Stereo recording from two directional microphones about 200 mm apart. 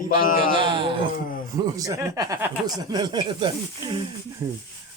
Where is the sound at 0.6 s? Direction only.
25° right (ahead or behind).